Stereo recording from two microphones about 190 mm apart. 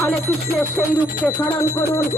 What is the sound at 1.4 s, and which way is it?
Speech, 15° left (ahead or behind).